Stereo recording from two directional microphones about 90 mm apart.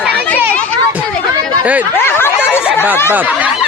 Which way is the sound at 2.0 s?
25° left (ahead or behind).